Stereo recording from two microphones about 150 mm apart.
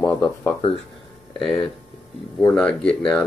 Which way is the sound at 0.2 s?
20° left (ahead or behind).